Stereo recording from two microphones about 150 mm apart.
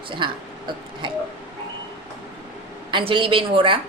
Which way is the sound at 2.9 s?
35° right (ahead or behind).